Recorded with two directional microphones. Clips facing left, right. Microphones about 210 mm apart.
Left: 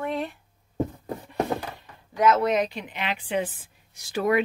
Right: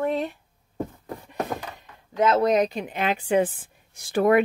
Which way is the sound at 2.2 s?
30° right (ahead or behind).